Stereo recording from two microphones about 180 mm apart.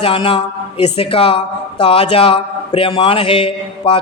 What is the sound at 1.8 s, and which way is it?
A man's voice, 30° left (ahead or behind).